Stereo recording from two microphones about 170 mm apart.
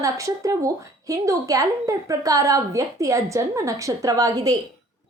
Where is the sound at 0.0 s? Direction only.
20° right (ahead or behind).